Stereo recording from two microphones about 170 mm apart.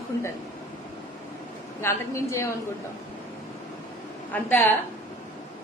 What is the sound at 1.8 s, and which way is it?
Speech, 15° left (ahead or behind).